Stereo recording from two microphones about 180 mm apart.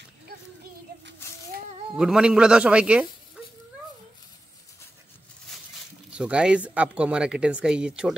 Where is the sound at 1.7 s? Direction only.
35° right (ahead or behind).